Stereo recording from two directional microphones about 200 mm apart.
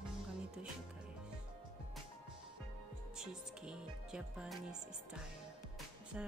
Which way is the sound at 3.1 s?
5° right (ahead or behind).